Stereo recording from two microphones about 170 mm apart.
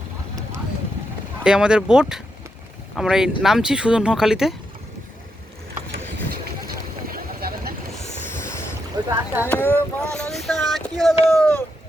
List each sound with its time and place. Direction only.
1.5 s speech: 5° right (ahead or behind)
7.1 s vehicle: 60° right (ahead or behind)
7.9 s vehicle: 40° left (ahead or behind)
9.0 s rowboat: 10° right (ahead or behind)
9.5 s speech: 10° left (ahead or behind)